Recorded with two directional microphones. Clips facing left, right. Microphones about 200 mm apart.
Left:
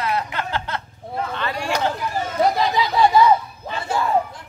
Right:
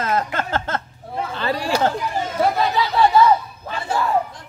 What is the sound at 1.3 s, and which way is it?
Chatter, 35° right (ahead or behind).